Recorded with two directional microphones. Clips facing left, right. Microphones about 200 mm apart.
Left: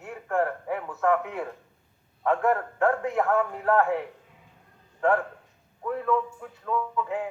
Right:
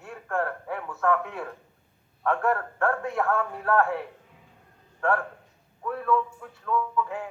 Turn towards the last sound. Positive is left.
turn(degrees=20)  # may be behind; listen again after turning